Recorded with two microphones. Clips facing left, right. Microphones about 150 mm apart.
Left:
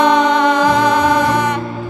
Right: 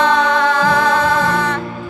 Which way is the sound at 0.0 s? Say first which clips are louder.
Left 3 dB; 20° left (ahead or behind).